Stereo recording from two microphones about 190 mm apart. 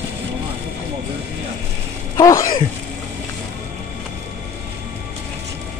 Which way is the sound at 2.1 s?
15° left (ahead or behind).